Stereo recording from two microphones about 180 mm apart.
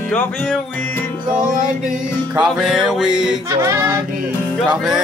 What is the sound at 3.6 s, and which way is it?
Music, 15° right (ahead or behind).